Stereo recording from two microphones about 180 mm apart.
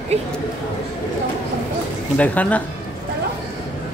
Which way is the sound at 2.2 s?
10° left (ahead or behind).